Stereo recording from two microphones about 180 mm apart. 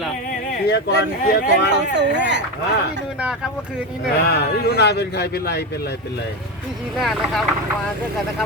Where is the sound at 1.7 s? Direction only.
75° right (ahead or behind).